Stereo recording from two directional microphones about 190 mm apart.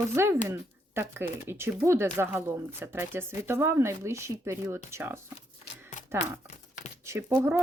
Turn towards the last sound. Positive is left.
turn(degrees=-15)  # may be behind; listen again after turning